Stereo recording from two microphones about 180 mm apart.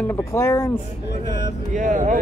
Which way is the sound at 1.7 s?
45° right (ahead or behind).